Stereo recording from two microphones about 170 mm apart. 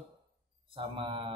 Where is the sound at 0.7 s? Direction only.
30° right (ahead or behind).